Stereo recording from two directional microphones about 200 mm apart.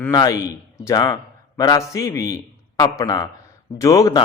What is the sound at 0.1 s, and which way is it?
A man's voice, 20° left (ahead or behind).